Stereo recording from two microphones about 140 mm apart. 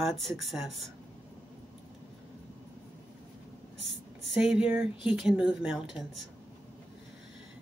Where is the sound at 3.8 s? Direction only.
5° right (ahead or behind).